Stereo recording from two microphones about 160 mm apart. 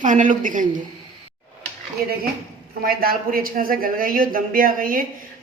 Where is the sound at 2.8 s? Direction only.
65° right (ahead or behind).